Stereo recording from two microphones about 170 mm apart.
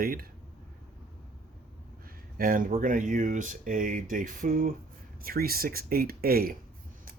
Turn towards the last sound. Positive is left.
turn(degrees=-60)  # may be behind; listen again after turning